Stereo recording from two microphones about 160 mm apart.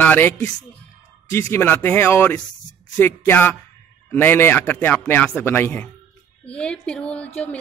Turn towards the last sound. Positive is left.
turn(degrees=10)  # may be behind; listen again after turning